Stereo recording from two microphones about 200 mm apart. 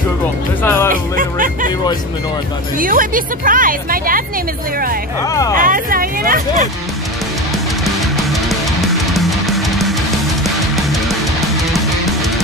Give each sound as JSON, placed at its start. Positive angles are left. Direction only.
{"t": 0.7, "sound": "music", "side_deg": 10}
{"t": 1.1, "sound": "music", "side_deg": -40}
{"t": 2.8, "sound": "a woman's voice", "side_deg": -45}
{"t": 5.3, "sound": "speech", "side_deg": 15}
{"t": 5.6, "sound": "a woman's voice", "side_deg": -45}
{"t": 8.5, "sound": "music", "side_deg": 0}